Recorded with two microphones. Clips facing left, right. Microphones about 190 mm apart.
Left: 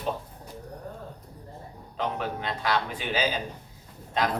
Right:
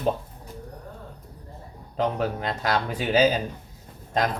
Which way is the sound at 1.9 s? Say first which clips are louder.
Right 5 dB; 40° right (ahead or behind).